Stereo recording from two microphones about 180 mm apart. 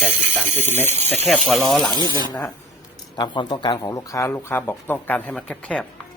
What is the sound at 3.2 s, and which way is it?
Speech, 25° left (ahead or behind).